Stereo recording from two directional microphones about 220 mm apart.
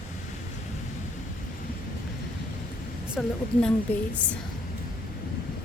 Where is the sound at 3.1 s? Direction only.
5° left (ahead or behind).